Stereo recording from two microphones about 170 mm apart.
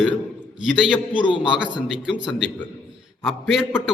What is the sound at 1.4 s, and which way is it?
A man's voice, 5° right (ahead or behind).